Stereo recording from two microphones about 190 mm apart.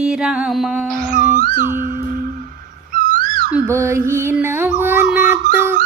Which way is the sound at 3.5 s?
15° right (ahead or behind).